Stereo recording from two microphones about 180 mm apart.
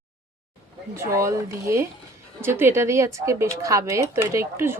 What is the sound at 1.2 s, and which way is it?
Speech, 15° right (ahead or behind).